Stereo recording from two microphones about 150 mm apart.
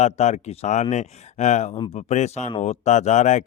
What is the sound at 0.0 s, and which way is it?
Speech, 50° left (ahead or behind).